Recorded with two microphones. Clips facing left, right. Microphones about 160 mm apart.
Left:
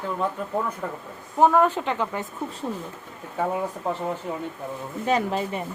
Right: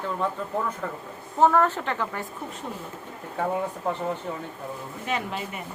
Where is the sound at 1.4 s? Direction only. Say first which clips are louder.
Left 2 dB; 15° left (ahead or behind).